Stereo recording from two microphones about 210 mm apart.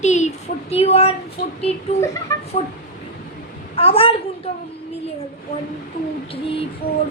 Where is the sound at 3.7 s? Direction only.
30° left (ahead or behind).